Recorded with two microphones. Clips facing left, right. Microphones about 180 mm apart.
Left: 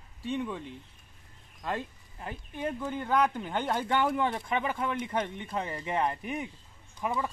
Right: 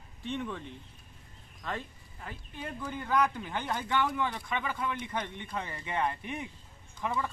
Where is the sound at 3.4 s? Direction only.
45° left (ahead or behind).